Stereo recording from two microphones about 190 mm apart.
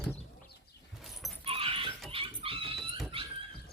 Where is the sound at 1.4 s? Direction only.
30° right (ahead or behind).